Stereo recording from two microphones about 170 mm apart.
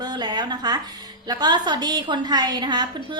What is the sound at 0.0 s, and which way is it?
A woman's voice, 25° right (ahead or behind).